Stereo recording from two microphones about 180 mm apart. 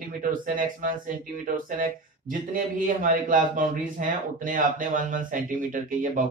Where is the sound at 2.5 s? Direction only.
50° right (ahead or behind).